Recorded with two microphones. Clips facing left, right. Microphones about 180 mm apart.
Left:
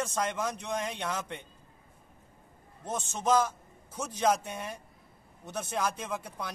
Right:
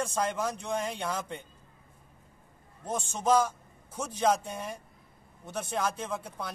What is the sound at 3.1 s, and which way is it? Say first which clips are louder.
Speech: right 1 dB; 10° right (ahead or behind).